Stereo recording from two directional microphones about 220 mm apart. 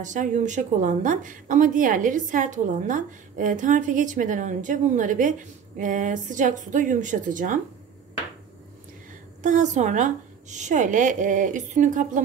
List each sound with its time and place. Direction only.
0.0 s a woman's voice: 35° right (ahead or behind)
9.4 s a woman's voice: 35° right (ahead or behind)